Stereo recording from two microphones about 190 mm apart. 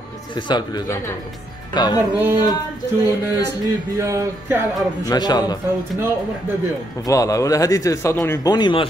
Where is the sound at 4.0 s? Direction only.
15° right (ahead or behind).